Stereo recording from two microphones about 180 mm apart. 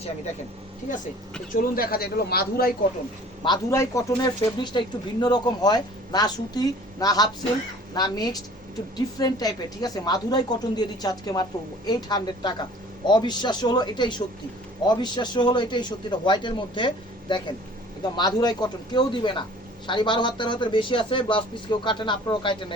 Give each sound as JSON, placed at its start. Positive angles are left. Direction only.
{"t": 1.7, "sound": "a man's voice", "side_deg": 55}
{"t": 3.4, "sound": "speech", "side_deg": 20}